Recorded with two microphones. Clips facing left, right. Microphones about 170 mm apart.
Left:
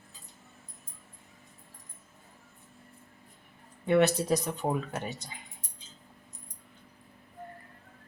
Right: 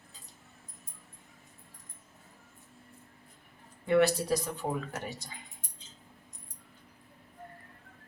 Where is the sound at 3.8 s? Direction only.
20° left (ahead or behind).